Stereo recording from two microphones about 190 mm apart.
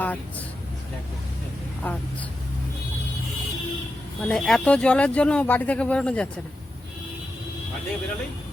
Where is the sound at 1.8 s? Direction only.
10° left (ahead or behind).